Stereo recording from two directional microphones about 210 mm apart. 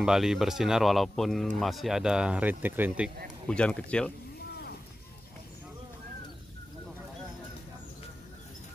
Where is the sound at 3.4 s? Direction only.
5° left (ahead or behind).